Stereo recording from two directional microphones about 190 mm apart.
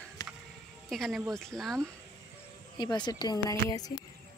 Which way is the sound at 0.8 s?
Centre (ahead or behind).